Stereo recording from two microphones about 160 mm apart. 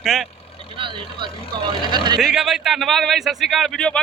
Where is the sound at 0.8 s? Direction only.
30° right (ahead or behind).